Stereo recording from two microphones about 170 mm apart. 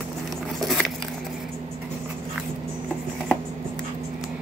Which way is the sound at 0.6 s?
Centre (ahead or behind).